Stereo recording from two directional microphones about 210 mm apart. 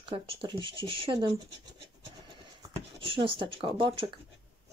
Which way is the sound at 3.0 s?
25° right (ahead or behind).